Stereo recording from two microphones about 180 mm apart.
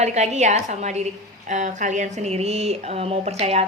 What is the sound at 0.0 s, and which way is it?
A woman's voice, 40° right (ahead or behind).